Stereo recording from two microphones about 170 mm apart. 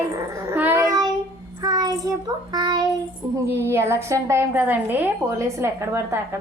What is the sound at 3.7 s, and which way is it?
A woman's voice, 15° right (ahead or behind).